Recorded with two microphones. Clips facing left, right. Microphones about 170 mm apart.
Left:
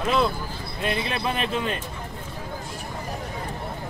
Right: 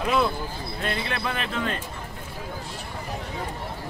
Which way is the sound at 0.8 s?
20° left (ahead or behind).